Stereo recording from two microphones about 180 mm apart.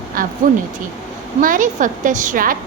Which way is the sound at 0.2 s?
50° right (ahead or behind).